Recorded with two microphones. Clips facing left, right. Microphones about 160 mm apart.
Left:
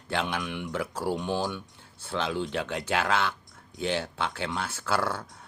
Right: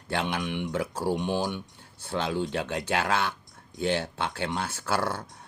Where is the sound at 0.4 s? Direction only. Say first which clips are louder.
Right 3 dB; 25° right (ahead or behind).